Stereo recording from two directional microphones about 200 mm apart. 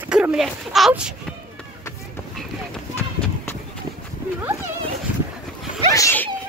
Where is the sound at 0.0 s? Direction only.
5° right (ahead or behind).